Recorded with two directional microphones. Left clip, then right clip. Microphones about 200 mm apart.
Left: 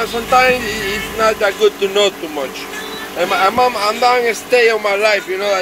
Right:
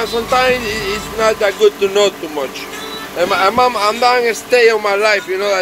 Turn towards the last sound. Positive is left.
turn(degrees=-5)  # may be behind; listen again after turning